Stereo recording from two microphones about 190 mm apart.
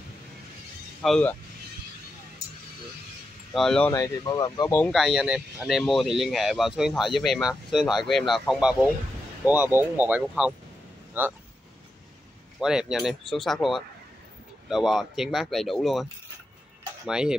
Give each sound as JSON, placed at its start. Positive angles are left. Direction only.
{"t": 1.0, "sound": "speech", "side_deg": 5}
{"t": 3.5, "sound": "speech", "side_deg": 5}
{"t": 3.9, "sound": "speech", "side_deg": 15}
{"t": 4.9, "sound": "speech", "side_deg": 0}
{"t": 12.5, "sound": "speech", "side_deg": -5}